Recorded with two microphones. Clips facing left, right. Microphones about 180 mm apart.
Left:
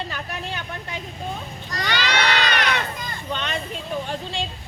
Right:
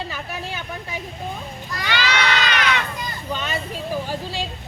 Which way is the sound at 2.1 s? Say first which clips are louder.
Left 2 dB; 35° left (ahead or behind).